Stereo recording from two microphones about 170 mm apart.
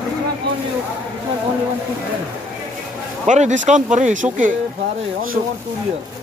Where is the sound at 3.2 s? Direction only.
45° right (ahead or behind).